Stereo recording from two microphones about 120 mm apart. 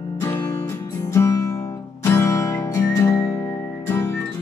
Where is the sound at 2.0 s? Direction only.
20° left (ahead or behind).